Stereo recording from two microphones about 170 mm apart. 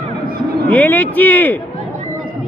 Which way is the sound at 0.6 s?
10° left (ahead or behind).